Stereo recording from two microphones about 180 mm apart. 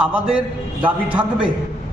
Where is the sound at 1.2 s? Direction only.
5° right (ahead or behind).